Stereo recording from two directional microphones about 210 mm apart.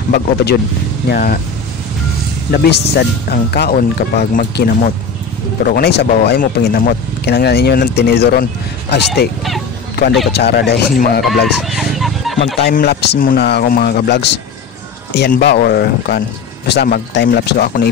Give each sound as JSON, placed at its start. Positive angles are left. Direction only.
{"t": 1.0, "sound": "speech", "side_deg": 45}
{"t": 2.5, "sound": "speech", "side_deg": 50}
{"t": 10.3, "sound": "speech", "side_deg": 50}
{"t": 11.4, "sound": "a sound", "side_deg": 0}
{"t": 12.5, "sound": "speech", "side_deg": 50}